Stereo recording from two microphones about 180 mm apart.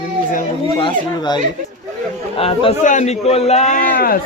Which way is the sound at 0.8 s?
25° left (ahead or behind).